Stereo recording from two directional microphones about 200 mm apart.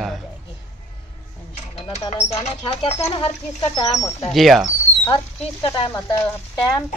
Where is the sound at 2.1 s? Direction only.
30° left (ahead or behind).